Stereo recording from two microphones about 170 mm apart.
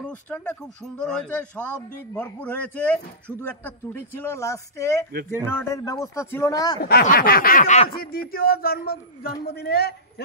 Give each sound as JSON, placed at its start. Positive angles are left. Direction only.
{"t": 0.0, "sound": "speech", "side_deg": 10}
{"t": 6.8, "sound": "a man's voice", "side_deg": 60}
{"t": 7.6, "sound": "speech", "side_deg": 40}
{"t": 7.9, "sound": "a man's voice", "side_deg": 60}